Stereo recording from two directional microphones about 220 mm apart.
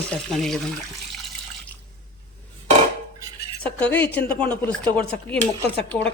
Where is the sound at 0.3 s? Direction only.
Centre (ahead or behind).